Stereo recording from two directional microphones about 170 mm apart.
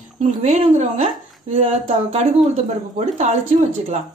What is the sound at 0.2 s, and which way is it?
Speech, 40° right (ahead or behind).